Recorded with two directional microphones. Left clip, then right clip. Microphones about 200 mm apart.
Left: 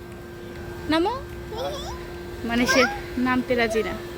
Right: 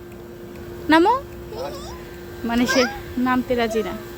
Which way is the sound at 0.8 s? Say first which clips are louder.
Right 8 dB; 40° right (ahead or behind).